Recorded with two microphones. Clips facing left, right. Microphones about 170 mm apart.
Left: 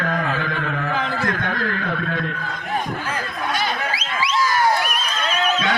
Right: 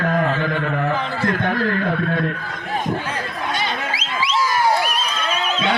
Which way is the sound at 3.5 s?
25° right (ahead or behind).